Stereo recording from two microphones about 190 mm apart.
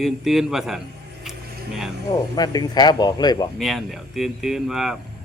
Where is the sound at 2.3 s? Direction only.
20° left (ahead or behind).